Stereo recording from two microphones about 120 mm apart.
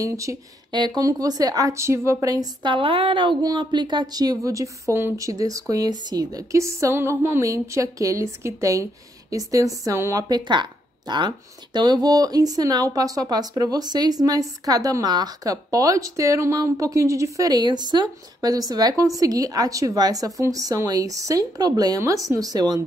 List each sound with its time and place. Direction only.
0.0 s a woman's voice: 25° right (ahead or behind)
0.7 s a woman's voice: 40° right (ahead or behind); by 10.2 s 25° right (ahead or behind)
10.2 s speech: 40° right (ahead or behind)